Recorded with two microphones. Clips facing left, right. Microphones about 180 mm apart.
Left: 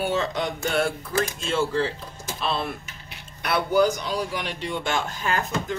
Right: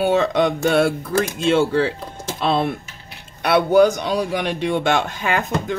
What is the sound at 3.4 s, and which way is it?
Speech, 65° right (ahead or behind).